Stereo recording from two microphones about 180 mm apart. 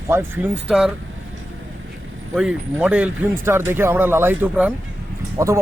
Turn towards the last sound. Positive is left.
turn(degrees=-15)  # may be behind; listen again after turning